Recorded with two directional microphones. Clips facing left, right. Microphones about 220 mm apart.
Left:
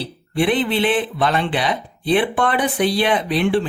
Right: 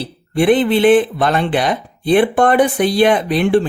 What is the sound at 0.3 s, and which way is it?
Speech, 45° right (ahead or behind).